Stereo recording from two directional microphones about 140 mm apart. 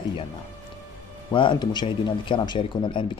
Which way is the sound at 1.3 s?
35° left (ahead or behind).